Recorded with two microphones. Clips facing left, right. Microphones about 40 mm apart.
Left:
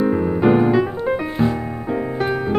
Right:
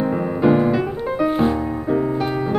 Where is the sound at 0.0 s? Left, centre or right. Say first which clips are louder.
Left 2 dB; centre.